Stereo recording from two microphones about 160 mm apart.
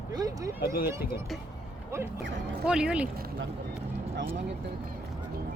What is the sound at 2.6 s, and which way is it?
Speech, 5° right (ahead or behind).